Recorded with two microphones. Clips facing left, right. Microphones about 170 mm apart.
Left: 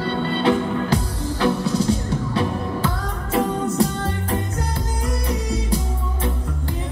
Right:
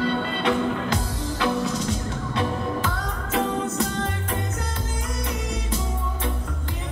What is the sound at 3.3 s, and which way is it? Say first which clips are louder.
Music: left 4 dB; 35° left (ahead or behind).